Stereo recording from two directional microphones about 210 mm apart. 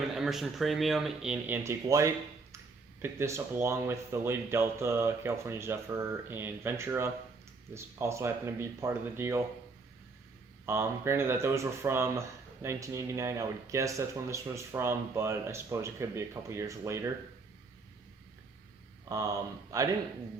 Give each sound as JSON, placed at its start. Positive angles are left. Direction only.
{"t": 0.1, "sound": "speech", "side_deg": 0}
{"t": 10.7, "sound": "speech", "side_deg": -10}
{"t": 19.7, "sound": "speech", "side_deg": -15}